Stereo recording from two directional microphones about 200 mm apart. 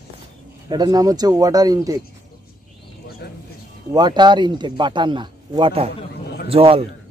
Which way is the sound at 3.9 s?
20° right (ahead or behind).